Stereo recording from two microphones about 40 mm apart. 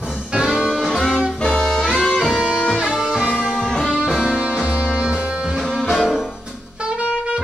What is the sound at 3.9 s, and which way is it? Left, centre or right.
Music, right.